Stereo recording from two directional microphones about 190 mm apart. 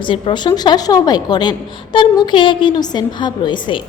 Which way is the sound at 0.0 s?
25° left (ahead or behind).